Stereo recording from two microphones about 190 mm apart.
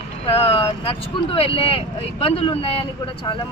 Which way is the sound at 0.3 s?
30° left (ahead or behind).